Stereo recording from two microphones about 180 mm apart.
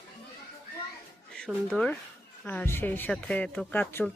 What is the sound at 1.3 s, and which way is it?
Speech, 5° left (ahead or behind).